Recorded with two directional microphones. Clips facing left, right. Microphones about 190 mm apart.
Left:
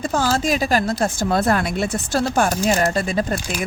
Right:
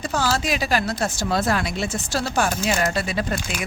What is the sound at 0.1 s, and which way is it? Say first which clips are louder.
Speech: left 3 dB; 45° left (ahead or behind).